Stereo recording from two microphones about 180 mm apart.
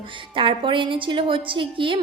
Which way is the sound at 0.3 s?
30° right (ahead or behind).